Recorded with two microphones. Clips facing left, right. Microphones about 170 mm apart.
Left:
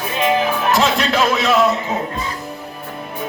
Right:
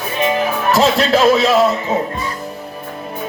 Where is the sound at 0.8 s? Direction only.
30° right (ahead or behind).